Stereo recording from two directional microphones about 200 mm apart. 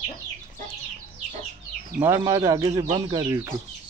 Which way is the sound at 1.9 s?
15° right (ahead or behind).